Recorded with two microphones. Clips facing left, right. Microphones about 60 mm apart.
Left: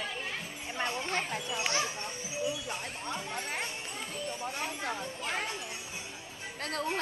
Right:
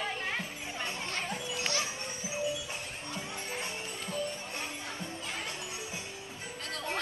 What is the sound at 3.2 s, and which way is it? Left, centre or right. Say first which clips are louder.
Music: left 3 dB; left.